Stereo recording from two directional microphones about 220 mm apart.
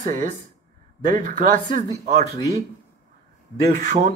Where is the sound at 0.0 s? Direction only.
35° right (ahead or behind).